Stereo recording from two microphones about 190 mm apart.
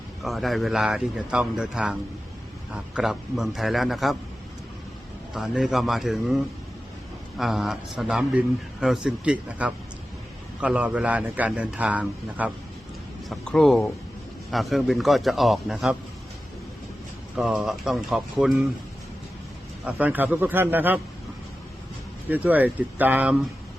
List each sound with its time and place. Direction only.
0.2 s a man's voice: centre (ahead or behind)
5.3 s a man's voice: centre (ahead or behind)
17.3 s a man's voice: centre (ahead or behind)
19.8 s a man's voice: 5° right (ahead or behind)
22.3 s a man's voice: 10° right (ahead or behind)